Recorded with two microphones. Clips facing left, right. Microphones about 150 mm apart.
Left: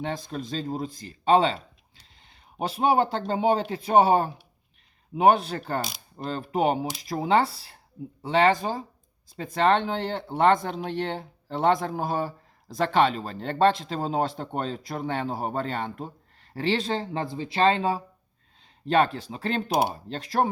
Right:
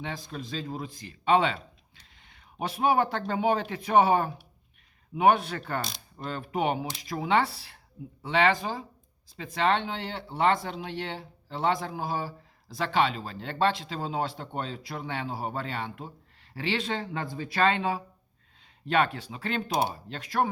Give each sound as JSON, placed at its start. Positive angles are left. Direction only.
{"t": 0.0, "sound": "speech", "side_deg": 45}